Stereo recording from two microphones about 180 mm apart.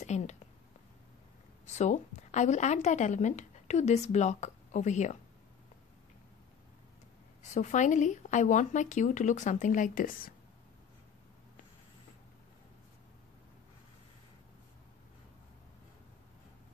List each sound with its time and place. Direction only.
0.0 s a sound: 40° left (ahead or behind)
1.7 s speech: 40° left (ahead or behind)
7.5 s speech: 40° left (ahead or behind)